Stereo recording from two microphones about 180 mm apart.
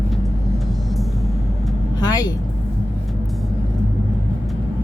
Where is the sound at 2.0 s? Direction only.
20° left (ahead or behind).